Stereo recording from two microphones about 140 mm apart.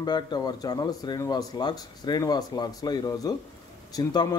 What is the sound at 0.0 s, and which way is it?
A man's voice, 30° left (ahead or behind).